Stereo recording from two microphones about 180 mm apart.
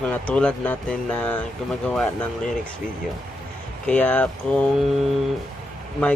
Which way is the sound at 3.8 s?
5° left (ahead or behind).